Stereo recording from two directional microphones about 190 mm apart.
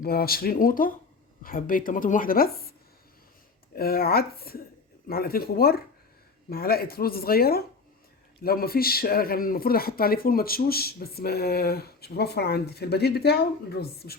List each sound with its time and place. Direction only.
0.0 s speech: 55° left (ahead or behind)
3.8 s speech: 50° left (ahead or behind)